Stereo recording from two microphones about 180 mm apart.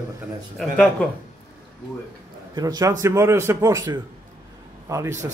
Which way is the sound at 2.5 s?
20° right (ahead or behind).